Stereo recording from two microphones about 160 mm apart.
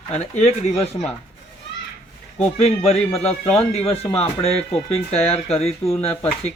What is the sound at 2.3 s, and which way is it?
Speech, 40° left (ahead or behind).